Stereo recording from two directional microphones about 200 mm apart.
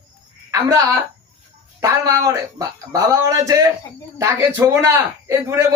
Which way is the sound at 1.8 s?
15° right (ahead or behind).